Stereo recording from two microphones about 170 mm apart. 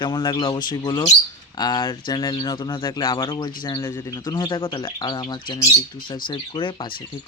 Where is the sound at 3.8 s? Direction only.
15° left (ahead or behind); by 6.9 s 30° left (ahead or behind).